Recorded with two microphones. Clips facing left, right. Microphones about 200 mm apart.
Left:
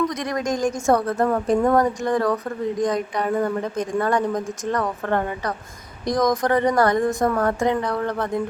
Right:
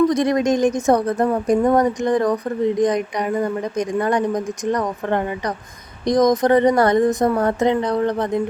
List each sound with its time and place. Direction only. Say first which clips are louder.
0.1 s a woman's voice: right 7 dB; 25° right (ahead or behind)